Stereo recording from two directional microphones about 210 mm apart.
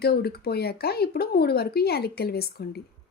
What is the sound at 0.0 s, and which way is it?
Speech, 50° left (ahead or behind).